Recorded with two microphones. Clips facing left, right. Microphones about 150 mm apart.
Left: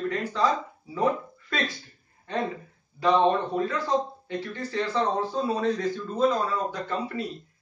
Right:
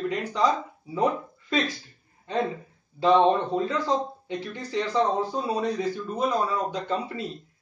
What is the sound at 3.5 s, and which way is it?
Speech, 20° right (ahead or behind).